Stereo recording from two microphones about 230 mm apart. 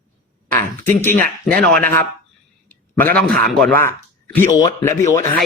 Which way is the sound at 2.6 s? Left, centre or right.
Centre.